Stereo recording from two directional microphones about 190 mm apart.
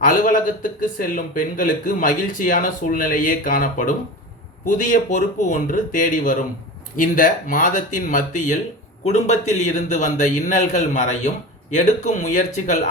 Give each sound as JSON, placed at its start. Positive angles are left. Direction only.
{"t": 0.0, "sound": "a man's voice", "side_deg": 45}